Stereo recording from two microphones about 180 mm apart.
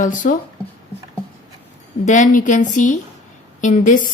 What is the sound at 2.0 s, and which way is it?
A woman's voice, 45° left (ahead or behind).